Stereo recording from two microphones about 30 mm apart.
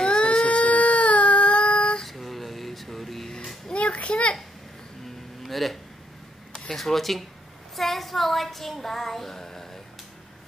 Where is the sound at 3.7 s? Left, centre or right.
Left.